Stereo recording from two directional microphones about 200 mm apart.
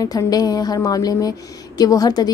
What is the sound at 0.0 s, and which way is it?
A woman's voice, 20° left (ahead or behind).